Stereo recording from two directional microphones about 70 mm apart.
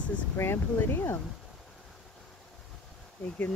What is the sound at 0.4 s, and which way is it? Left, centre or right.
Speech, left.